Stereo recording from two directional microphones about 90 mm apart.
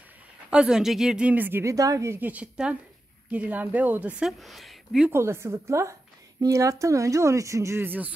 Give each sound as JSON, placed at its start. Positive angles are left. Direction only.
{"t": 0.5, "sound": "speech", "side_deg": -10}
{"t": 1.6, "sound": "speech", "side_deg": -35}
{"t": 2.1, "sound": "speech", "side_deg": -20}
{"t": 4.2, "sound": "speech", "side_deg": 0}
{"t": 5.1, "sound": "a woman's voice", "side_deg": -30}